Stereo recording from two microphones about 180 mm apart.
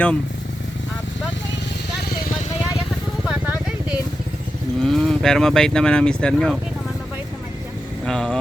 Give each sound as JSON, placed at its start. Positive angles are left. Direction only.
{"t": 3.2, "sound": "vehicle", "side_deg": -10}
{"t": 4.8, "sound": "speech", "side_deg": 0}
{"t": 8.0, "sound": "speech", "side_deg": 5}